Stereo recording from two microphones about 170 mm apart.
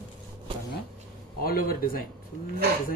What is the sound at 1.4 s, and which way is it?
Speech, 60° left (ahead or behind).